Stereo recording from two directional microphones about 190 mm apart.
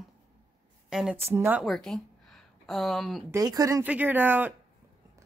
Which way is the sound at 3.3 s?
20° right (ahead or behind).